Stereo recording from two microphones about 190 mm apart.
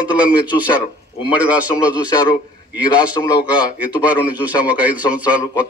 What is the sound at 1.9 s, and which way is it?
A man's voice, 20° left (ahead or behind).